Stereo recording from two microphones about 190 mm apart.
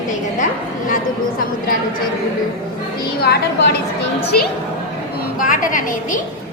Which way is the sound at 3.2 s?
60° left (ahead or behind).